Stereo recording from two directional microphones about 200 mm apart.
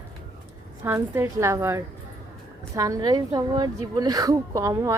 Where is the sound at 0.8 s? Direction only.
15° right (ahead or behind).